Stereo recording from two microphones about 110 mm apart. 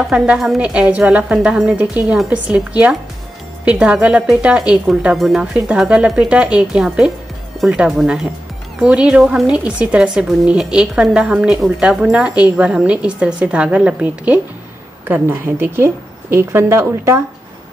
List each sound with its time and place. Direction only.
0.0 s a woman's voice: 5° right (ahead or behind); by 17.2 s 25° right (ahead or behind)